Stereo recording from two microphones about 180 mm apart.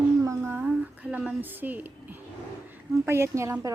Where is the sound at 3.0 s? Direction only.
15° right (ahead or behind).